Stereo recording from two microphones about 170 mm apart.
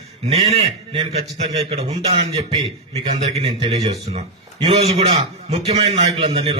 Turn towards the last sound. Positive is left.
turn(degrees=-35)  # may be behind; listen again after turning